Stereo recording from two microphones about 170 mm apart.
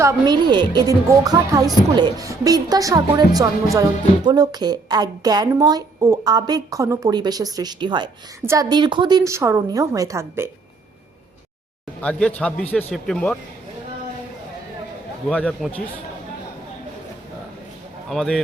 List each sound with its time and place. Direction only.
0.0 s speech: 25° right (ahead or behind)
12.0 s a man's voice: 5° left (ahead or behind)
15.3 s a man's voice: 5° left (ahead or behind)
18.1 s speech: centre (ahead or behind)